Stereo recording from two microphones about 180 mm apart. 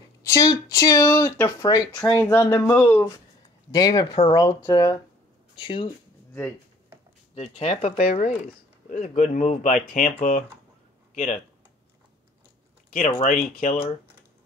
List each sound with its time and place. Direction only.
0.2 s speech: 20° left (ahead or behind)
7.3 s speech: 35° left (ahead or behind)
12.9 s speech: 40° left (ahead or behind)